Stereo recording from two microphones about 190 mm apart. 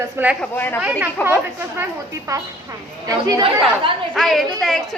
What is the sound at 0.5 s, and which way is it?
Speech, 10° left (ahead or behind).